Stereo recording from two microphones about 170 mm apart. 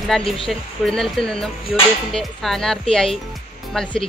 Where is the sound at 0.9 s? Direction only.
5° left (ahead or behind).